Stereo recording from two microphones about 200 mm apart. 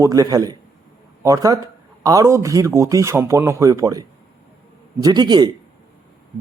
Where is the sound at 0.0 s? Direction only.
15° right (ahead or behind).